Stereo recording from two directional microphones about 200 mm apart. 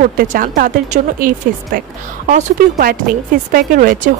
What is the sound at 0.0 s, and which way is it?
Speech, 45° right (ahead or behind).